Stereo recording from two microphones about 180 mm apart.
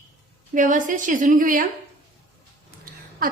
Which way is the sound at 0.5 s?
45° right (ahead or behind).